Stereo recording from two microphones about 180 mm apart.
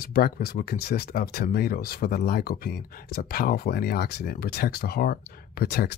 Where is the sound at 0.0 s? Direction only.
55° left (ahead or behind).